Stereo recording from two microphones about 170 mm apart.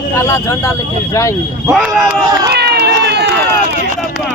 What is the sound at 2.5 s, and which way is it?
Run, 80° right.